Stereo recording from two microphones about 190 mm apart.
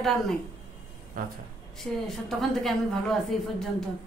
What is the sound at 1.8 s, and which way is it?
A woman's voice, centre (ahead or behind).